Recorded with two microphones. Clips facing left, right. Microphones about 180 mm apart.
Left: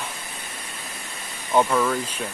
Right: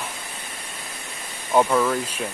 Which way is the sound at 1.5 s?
5° right (ahead or behind).